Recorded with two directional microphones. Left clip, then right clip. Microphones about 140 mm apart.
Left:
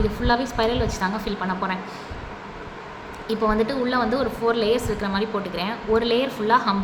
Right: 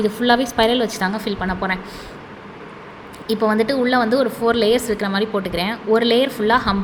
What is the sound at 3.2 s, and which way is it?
A woman's voice, 35° right (ahead or behind).